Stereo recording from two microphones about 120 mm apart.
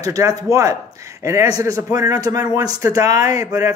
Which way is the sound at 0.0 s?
30° right (ahead or behind).